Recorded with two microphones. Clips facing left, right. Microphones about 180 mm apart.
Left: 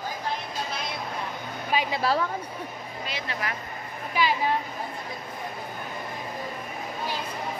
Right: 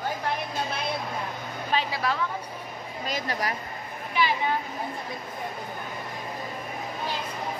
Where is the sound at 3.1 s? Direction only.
40° right (ahead or behind).